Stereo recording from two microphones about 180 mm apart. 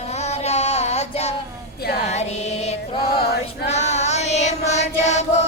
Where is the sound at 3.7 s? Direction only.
40° left (ahead or behind).